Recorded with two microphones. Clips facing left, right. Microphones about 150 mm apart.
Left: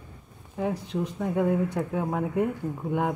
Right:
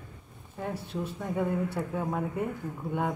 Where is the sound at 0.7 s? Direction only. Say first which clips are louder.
Left 4 dB; 15° left (ahead or behind).